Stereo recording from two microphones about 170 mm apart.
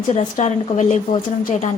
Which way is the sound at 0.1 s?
45° left (ahead or behind).